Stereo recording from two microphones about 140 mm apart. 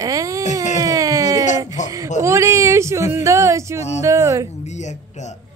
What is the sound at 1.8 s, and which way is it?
Speech, 60° left (ahead or behind).